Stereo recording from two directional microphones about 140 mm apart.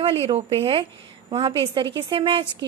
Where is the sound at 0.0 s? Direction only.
40° right (ahead or behind).